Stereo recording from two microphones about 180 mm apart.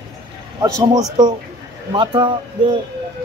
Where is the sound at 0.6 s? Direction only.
20° right (ahead or behind).